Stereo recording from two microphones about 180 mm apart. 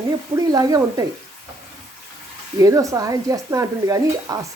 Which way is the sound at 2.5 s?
20° right (ahead or behind).